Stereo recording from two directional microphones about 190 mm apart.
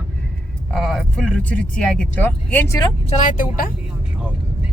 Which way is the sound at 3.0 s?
40° left (ahead or behind).